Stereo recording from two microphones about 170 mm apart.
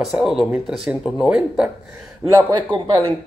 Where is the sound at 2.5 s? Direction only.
25° right (ahead or behind).